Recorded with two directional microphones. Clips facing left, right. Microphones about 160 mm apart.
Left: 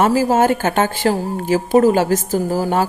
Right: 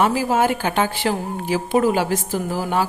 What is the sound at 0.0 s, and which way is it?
A woman's voice, 40° left (ahead or behind).